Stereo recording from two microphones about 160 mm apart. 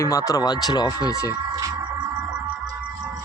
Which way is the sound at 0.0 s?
20° left (ahead or behind).